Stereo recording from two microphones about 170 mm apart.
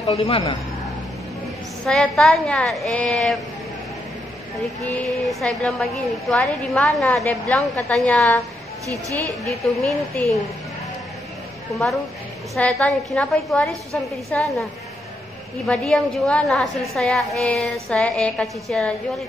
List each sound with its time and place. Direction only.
0.0 s a man's voice: 35° left (ahead or behind)
1.9 s a woman's voice: centre (ahead or behind)
4.8 s a woman's voice: 5° left (ahead or behind)
9.4 s a woman's voice: centre (ahead or behind)
12.5 s a woman's voice: 10° left (ahead or behind)
15.6 s a woman's voice: 5° left (ahead or behind)